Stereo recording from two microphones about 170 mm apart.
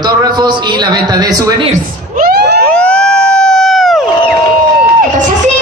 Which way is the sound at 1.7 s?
60° right (ahead or behind).